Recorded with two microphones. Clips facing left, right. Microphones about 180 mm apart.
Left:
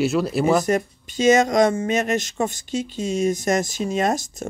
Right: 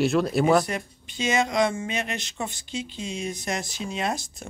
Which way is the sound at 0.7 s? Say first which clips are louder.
Left 10 dB; 45° left (ahead or behind).